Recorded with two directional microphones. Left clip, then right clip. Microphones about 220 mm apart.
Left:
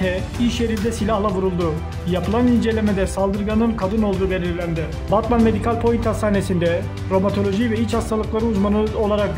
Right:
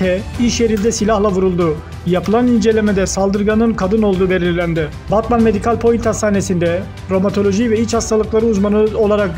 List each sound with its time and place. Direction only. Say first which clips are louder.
0.0 s speech: right 5 dB; 15° right (ahead or behind)
5.1 s speech: right 4 dB; 10° right (ahead or behind)